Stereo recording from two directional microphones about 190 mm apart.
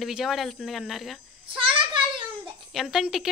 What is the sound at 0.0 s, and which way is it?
A child's voice, centre (ahead or behind).